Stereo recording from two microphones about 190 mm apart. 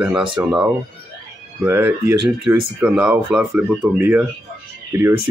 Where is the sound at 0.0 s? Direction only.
5° right (ahead or behind).